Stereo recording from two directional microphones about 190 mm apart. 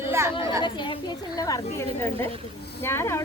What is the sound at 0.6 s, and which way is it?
A woman's voice, 25° left (ahead or behind).